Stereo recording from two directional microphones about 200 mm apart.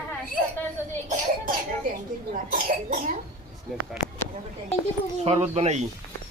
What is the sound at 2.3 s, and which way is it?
Speech, 40° right (ahead or behind).